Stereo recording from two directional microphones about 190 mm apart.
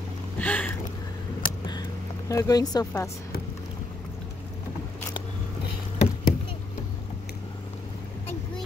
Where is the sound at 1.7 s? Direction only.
20° left (ahead or behind).